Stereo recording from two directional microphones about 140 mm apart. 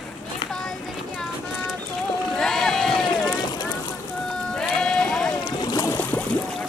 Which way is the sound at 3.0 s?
35° left (ahead or behind).